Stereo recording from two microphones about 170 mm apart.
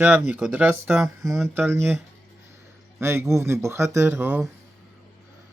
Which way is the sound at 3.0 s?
15° right (ahead or behind).